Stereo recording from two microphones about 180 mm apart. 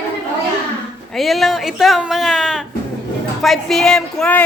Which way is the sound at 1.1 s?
Centre (ahead or behind).